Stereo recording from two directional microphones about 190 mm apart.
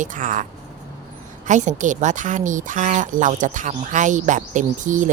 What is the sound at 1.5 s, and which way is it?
Speech, 40° right (ahead or behind).